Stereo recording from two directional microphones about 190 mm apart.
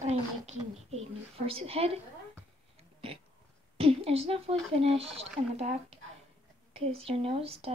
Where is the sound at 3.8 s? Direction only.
30° right (ahead or behind).